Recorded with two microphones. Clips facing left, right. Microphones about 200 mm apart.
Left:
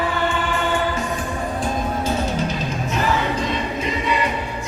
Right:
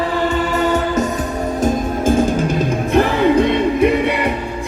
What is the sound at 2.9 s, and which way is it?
Music, 60° right (ahead or behind).